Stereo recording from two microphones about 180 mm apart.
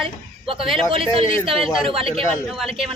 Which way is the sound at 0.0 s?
30° right (ahead or behind).